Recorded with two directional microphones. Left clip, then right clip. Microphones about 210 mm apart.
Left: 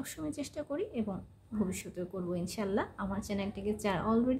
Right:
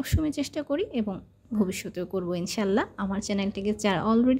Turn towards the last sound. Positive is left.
turn(degrees=-35)  # may be behind; listen again after turning